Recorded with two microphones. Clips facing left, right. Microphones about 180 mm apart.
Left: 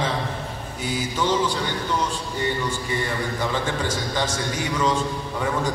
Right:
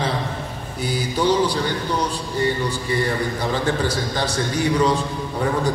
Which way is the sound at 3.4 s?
35° right (ahead or behind).